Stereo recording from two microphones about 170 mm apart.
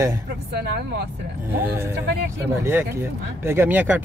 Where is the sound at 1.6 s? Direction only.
15° right (ahead or behind).